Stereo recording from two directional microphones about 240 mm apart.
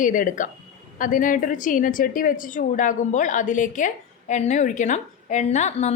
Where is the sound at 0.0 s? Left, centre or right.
Left.